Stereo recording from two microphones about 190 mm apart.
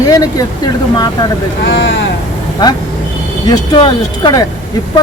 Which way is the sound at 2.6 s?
20° left (ahead or behind).